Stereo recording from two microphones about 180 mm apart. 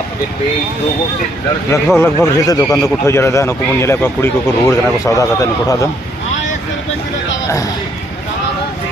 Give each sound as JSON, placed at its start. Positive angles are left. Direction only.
{"t": 2.0, "sound": "speech", "side_deg": 15}